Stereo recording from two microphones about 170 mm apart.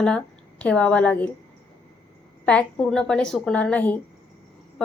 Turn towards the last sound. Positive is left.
turn(degrees=10)  # may be behind; listen again after turning